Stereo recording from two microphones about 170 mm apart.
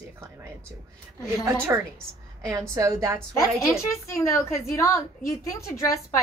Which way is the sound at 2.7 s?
15° right (ahead or behind).